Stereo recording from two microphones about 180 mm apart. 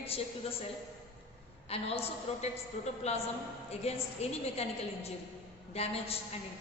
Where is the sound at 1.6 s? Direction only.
35° left (ahead or behind).